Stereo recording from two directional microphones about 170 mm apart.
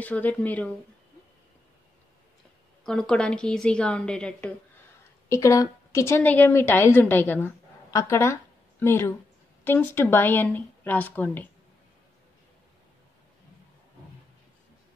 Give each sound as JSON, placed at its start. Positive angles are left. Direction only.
{"t": 0.0, "sound": "speech", "side_deg": 10}
{"t": 2.8, "sound": "a woman's voice", "side_deg": 5}
{"t": 5.3, "sound": "a woman's voice", "side_deg": 20}